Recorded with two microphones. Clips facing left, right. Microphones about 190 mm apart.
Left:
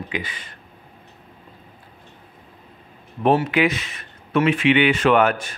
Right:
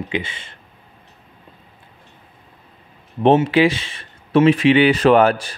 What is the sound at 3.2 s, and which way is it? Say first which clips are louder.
Speech: right 4 dB; 30° right (ahead or behind).